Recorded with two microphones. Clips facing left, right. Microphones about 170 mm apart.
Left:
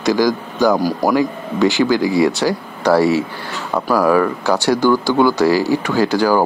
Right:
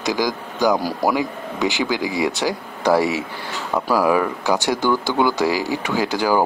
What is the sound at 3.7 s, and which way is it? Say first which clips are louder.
Speech: left 3 dB; centre (ahead or behind).